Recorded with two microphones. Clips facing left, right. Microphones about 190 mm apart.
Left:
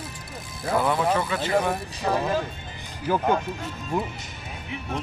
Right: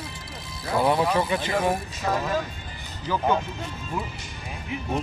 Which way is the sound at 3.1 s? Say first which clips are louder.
Left 3 dB; 50° left (ahead or behind).